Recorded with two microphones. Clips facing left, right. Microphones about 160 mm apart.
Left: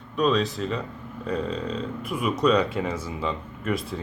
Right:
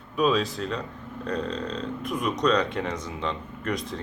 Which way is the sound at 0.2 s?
Centre (ahead or behind).